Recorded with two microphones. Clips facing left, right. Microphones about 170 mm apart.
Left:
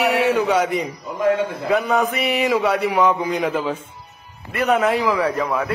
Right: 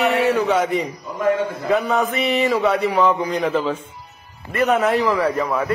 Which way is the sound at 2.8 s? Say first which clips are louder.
Even; 15° left (ahead or behind).